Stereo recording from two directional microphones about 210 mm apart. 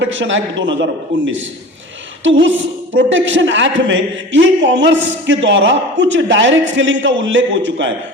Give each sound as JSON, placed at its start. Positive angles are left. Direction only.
{"t": 0.0, "sound": "a man's voice", "side_deg": -65}